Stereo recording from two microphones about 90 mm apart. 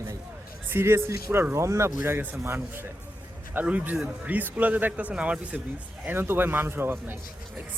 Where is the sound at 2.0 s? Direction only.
20° right (ahead or behind).